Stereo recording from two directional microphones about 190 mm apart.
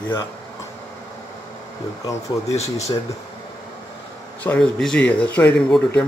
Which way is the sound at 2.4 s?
35° left (ahead or behind).